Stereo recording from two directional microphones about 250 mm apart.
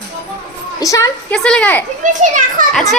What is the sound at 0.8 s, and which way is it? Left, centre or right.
A woman's voice, centre.